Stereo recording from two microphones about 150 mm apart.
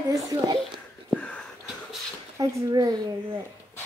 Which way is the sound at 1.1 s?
5° left (ahead or behind).